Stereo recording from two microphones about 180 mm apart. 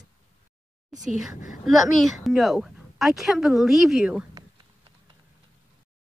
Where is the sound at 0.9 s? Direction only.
45° right (ahead or behind).